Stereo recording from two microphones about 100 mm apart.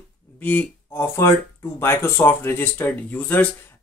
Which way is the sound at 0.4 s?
15° left (ahead or behind).